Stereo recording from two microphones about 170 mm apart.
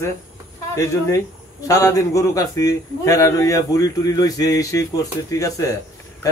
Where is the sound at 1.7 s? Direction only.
20° left (ahead or behind).